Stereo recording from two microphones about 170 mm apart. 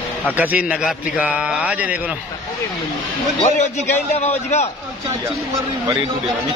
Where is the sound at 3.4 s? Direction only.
40° left (ahead or behind).